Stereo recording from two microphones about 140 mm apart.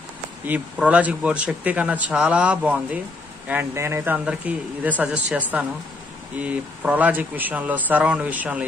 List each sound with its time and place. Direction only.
0.5 s speech: 10° right (ahead or behind)